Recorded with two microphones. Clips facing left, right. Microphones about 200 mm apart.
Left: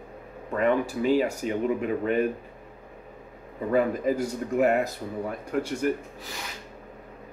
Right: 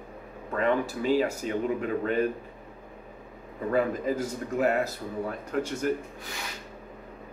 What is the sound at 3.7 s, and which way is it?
Speech, 10° left (ahead or behind).